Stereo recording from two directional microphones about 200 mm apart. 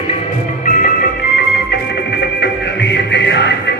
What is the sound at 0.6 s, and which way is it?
Music, 40° left (ahead or behind).